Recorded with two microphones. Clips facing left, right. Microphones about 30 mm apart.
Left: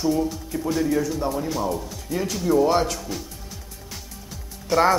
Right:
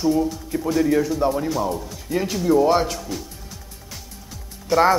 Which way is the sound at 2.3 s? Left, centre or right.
Centre.